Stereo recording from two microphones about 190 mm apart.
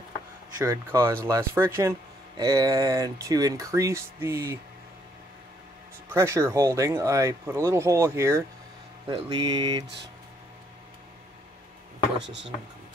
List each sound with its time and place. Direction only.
0.6 s speech: 15° right (ahead or behind)
6.0 s speech: 15° right (ahead or behind)
9.1 s speech: 25° right (ahead or behind)
12.2 s speech: 70° right (ahead or behind)